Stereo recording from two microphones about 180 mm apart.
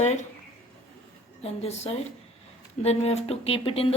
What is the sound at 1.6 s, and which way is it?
Speech, 35° left (ahead or behind).